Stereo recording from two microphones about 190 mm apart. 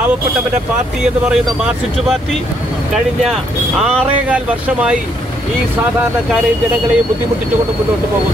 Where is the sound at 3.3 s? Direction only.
5° right (ahead or behind).